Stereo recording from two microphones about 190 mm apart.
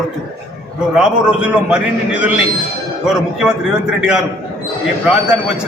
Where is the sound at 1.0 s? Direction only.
5° right (ahead or behind).